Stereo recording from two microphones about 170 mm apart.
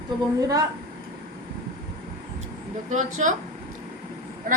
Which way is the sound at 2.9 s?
45° right (ahead or behind).